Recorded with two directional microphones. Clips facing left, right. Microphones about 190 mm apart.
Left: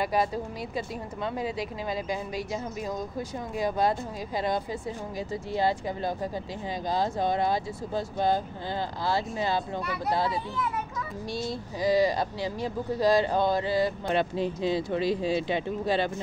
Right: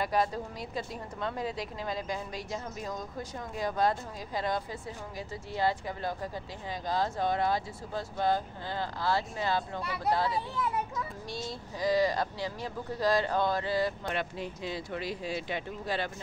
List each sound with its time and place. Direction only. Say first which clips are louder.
0.0 s a woman's voice: left 3 dB; 5° left (ahead or behind)
14.0 s speech: left 8 dB; 30° left (ahead or behind)